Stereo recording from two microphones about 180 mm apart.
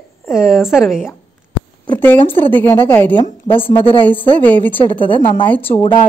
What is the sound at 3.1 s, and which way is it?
Speech, 30° left (ahead or behind).